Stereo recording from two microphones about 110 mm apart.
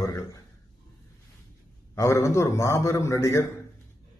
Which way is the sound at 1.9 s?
25° left (ahead or behind).